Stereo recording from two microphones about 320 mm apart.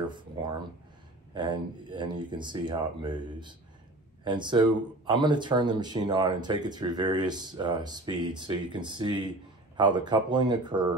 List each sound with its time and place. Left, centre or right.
1.3 s speech: centre